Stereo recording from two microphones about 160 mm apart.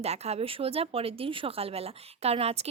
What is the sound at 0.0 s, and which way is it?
Speech, 40° right (ahead or behind).